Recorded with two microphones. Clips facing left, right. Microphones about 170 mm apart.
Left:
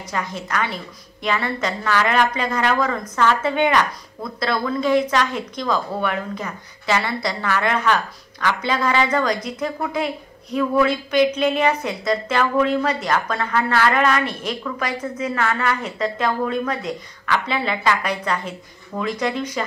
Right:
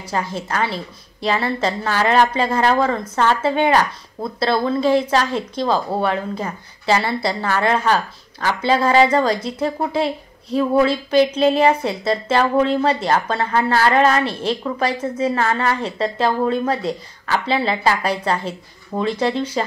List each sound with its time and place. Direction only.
0.1 s a woman's voice: 30° right (ahead or behind)